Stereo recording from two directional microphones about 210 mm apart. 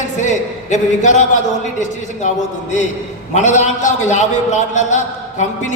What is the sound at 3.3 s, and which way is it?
A man's voice, 35° left (ahead or behind).